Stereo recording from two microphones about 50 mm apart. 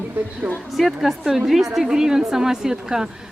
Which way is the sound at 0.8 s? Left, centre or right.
Centre.